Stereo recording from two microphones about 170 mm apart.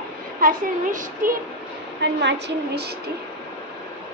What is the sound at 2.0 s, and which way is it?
A woman's voice, 90° right.